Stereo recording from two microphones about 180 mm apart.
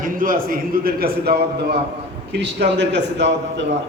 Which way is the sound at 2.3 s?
75° right (ahead or behind).